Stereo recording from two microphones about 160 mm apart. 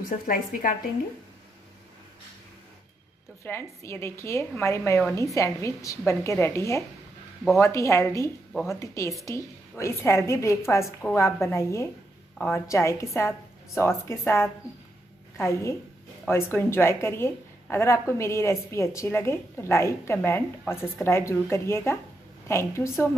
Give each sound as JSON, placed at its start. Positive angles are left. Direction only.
{"t": 0.3, "sound": "a woman's voice", "side_deg": 65}
{"t": 3.4, "sound": "a woman's voice", "side_deg": 15}